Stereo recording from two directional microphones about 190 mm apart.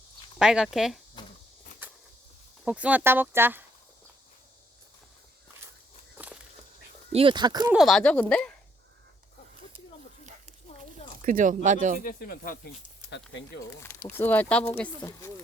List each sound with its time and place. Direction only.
0.3 s speech: 5° right (ahead or behind)
1.2 s a sound: 25° left (ahead or behind)
1.8 s walk: 10° right (ahead or behind)
2.6 s speech: 5° right (ahead or behind)
7.1 s speech: 30° right (ahead or behind)
7.7 s speech: centre (ahead or behind)
11.2 s speech: 45° right (ahead or behind)
12.0 s speech: 50° left (ahead or behind)
13.7 s speech: 15° left (ahead or behind)